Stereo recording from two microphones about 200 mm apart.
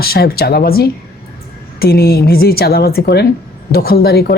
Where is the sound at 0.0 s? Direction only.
50° left (ahead or behind).